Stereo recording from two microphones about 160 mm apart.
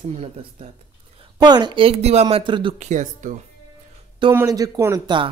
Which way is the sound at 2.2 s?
30° right (ahead or behind).